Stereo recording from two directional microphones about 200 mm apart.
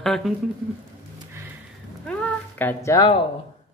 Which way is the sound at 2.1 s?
5° left (ahead or behind).